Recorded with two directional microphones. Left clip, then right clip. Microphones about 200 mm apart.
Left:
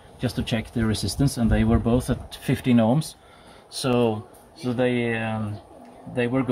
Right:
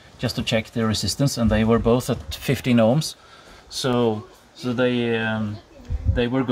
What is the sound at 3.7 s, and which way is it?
Speech, 5° right (ahead or behind).